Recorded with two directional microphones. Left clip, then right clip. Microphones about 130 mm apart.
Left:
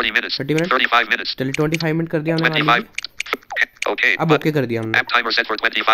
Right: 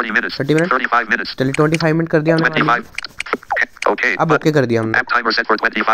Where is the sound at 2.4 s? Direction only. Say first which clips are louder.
Right 1 dB; 15° left (ahead or behind).